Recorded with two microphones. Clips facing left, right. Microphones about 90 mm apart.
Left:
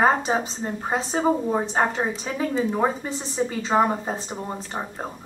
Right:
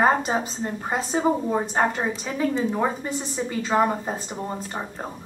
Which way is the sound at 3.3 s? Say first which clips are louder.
Left 1 dB; 20° left (ahead or behind).